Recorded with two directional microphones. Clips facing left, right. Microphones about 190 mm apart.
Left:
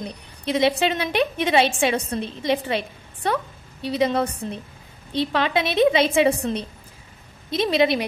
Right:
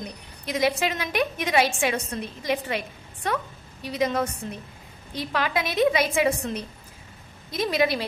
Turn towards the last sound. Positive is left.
turn(degrees=25)  # may be behind; listen again after turning